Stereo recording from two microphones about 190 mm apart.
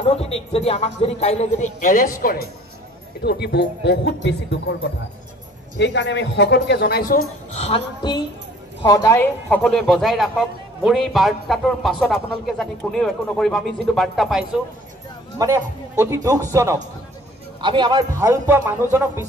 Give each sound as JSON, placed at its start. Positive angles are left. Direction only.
{"t": 0.1, "sound": "speech", "side_deg": 30}
{"t": 3.2, "sound": "speech", "side_deg": 60}
{"t": 5.8, "sound": "speech", "side_deg": 65}
{"t": 7.5, "sound": "a woman's voice", "side_deg": 30}
{"t": 15.3, "sound": "a man's voice", "side_deg": -15}